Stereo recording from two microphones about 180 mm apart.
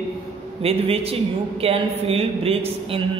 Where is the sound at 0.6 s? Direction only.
35° right (ahead or behind).